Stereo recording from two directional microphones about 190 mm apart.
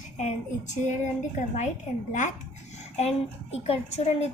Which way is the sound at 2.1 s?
40° left (ahead or behind).